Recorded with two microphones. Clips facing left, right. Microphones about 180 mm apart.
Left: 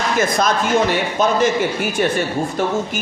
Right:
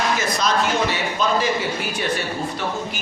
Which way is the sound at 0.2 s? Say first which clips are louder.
Left 4 dB; 50° left (ahead or behind).